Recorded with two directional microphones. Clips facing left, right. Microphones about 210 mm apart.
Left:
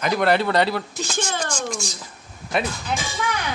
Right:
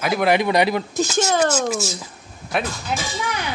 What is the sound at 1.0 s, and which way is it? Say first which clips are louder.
Speech: right 7 dB; 40° right (ahead or behind).